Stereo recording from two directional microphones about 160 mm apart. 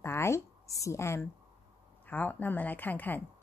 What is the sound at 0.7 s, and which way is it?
A woman's voice, 20° left (ahead or behind).